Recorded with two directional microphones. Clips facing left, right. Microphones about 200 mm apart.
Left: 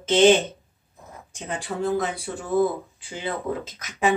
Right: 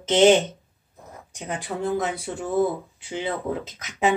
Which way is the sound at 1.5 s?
20° right (ahead or behind).